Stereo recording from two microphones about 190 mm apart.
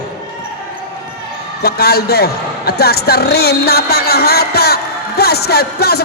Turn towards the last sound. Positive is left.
turn(degrees=55)  # may be behind; listen again after turning